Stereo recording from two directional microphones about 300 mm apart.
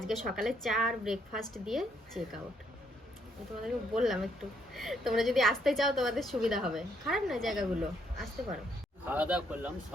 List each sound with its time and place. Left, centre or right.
0.0 s a woman's voice: centre
3.9 s a woman's voice: centre